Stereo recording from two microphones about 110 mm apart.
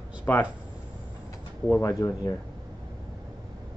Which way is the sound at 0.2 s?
20° left (ahead or behind).